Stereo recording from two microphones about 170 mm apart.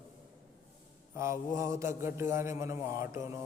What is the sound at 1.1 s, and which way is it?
Speech, 15° right (ahead or behind).